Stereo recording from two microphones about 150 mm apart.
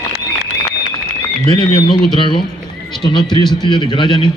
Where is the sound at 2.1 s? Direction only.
35° left (ahead or behind).